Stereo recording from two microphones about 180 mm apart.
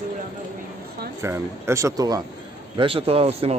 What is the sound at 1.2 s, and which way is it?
Speech, 15° right (ahead or behind).